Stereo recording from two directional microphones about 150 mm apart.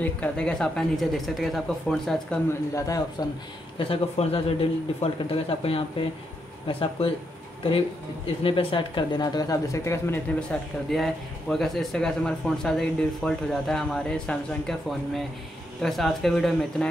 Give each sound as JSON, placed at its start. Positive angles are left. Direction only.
{"t": 0.0, "sound": "speech", "side_deg": 10}
{"t": 2.7, "sound": "speech", "side_deg": 20}
{"t": 3.7, "sound": "a man's voice", "side_deg": 40}
{"t": 8.5, "sound": "speech", "side_deg": 35}
{"t": 10.9, "sound": "speech", "side_deg": 0}